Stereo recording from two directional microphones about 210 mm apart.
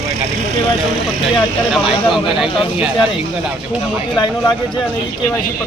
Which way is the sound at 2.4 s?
25° left (ahead or behind).